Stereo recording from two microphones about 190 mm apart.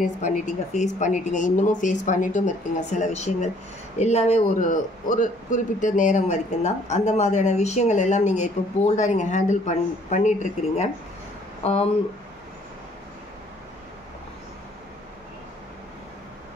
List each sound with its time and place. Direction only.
0.0 s speech: 40° left (ahead or behind)